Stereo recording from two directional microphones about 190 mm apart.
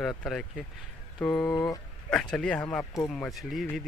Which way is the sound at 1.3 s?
20° left (ahead or behind).